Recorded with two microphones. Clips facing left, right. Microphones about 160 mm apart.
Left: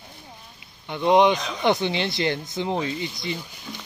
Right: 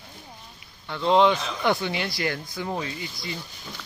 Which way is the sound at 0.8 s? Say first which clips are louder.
Left 2 dB; 20° left (ahead or behind).